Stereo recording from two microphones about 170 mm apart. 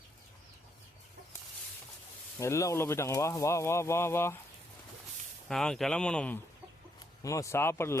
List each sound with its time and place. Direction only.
2.4 s speech: 15° left (ahead or behind)
5.5 s speech: 5° left (ahead or behind)
7.2 s speech: 20° left (ahead or behind)